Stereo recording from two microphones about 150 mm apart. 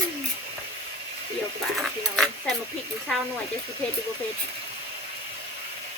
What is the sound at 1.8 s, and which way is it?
Speech, centre (ahead or behind).